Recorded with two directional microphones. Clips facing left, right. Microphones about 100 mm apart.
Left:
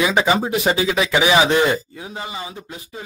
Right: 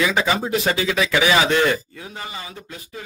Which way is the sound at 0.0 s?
20° left (ahead or behind).